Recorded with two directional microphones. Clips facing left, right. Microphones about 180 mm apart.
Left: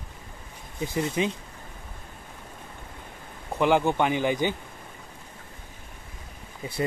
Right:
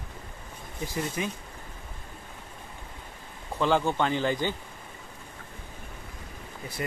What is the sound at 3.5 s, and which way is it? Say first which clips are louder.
Speech: left 3 dB; 15° left (ahead or behind).